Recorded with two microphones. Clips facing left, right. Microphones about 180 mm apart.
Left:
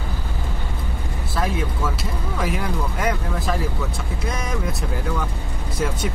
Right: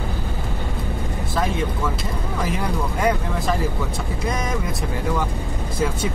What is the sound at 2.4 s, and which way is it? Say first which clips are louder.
Speech: even; centre (ahead or behind).